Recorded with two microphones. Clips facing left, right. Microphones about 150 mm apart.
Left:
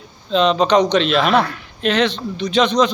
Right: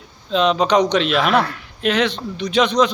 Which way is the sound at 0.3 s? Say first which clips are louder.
Left 2 dB; 5° right (ahead or behind).